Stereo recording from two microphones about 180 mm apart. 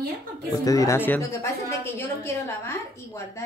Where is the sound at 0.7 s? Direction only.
15° left (ahead or behind).